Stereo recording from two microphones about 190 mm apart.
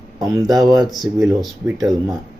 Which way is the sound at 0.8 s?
Centre (ahead or behind).